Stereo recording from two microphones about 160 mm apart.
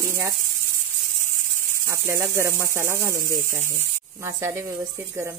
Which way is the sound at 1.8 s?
15° right (ahead or behind).